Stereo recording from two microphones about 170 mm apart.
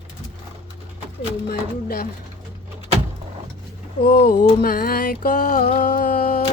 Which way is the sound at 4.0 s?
55° left (ahead or behind).